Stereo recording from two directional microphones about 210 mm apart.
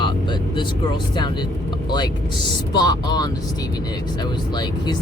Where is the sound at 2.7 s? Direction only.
20° left (ahead or behind).